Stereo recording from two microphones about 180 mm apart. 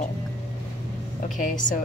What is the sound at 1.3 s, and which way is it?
Speech, 50° left (ahead or behind).